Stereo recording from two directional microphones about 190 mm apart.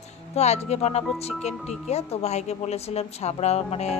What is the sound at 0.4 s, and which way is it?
A woman's voice, 35° left (ahead or behind).